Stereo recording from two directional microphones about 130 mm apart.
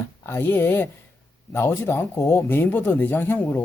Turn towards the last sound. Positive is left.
turn(degrees=15)  # may be behind; listen again after turning